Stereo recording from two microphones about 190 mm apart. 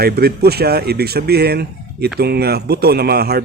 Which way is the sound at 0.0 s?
55° right (ahead or behind).